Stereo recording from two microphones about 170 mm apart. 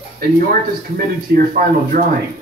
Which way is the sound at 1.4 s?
55° right (ahead or behind).